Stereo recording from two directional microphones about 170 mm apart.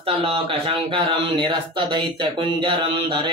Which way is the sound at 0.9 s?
30° right (ahead or behind).